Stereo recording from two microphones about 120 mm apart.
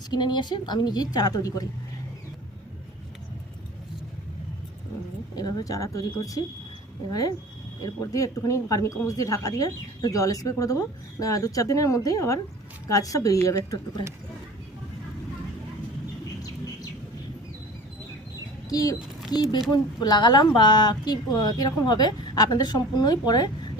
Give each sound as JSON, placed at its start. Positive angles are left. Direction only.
{"t": 0.1, "sound": "speech", "side_deg": 35}
{"t": 5.3, "sound": "speech", "side_deg": 35}
{"t": 18.7, "sound": "speech", "side_deg": 30}